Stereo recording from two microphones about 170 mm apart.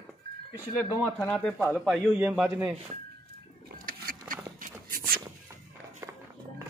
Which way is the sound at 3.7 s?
55° right (ahead or behind).